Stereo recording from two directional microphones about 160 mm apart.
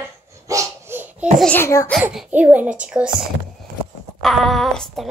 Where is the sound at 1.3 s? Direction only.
10° left (ahead or behind).